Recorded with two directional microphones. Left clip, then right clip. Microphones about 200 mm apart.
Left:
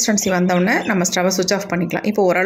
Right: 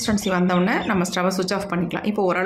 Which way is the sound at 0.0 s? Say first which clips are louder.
Left 4 dB; 15° left (ahead or behind).